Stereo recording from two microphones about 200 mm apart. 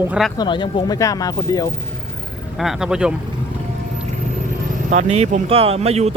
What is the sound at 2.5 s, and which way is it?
Speech, centre (ahead or behind).